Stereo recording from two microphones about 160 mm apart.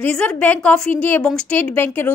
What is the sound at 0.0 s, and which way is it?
A woman's voice, 5° left (ahead or behind).